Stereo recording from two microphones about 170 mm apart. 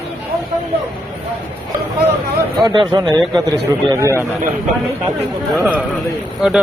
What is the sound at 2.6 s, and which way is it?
Speech, 25° right (ahead or behind).